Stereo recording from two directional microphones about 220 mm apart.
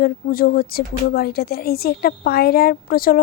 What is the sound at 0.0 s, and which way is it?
Speech, 40° left (ahead or behind).